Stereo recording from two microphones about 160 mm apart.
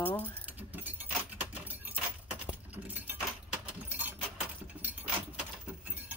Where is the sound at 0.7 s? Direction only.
10° right (ahead or behind).